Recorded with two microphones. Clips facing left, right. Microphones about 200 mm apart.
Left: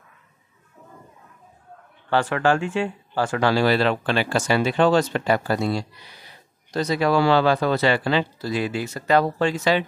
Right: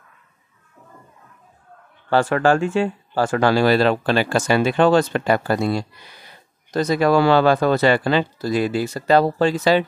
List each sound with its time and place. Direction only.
2.0 s speech: 45° right (ahead or behind)